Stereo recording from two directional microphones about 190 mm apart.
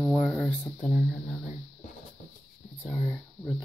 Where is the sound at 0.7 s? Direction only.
35° left (ahead or behind).